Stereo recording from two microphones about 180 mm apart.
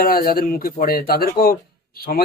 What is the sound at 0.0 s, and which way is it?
Speech, 55° left (ahead or behind).